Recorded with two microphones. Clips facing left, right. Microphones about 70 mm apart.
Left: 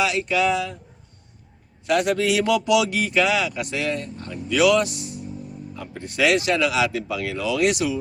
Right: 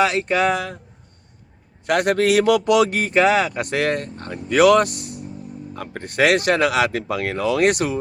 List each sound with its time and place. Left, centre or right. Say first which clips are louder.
0.0 s speech: right 3 dB; right
1.9 s speech: right 3 dB; right